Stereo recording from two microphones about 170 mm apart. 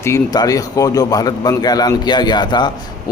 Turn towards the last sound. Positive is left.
turn(degrees=25)  # may be behind; listen again after turning